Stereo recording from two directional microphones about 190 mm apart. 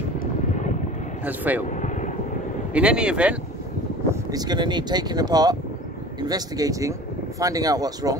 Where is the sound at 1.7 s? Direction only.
40° left (ahead or behind).